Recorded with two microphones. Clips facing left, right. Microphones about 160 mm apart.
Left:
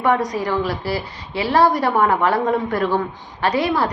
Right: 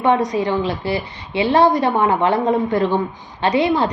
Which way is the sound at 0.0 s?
25° right (ahead or behind).